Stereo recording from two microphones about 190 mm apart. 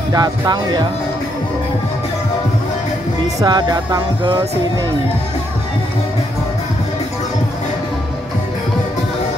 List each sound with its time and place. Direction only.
0.1 s music: 20° right (ahead or behind)
3.2 s music: 20° right (ahead or behind)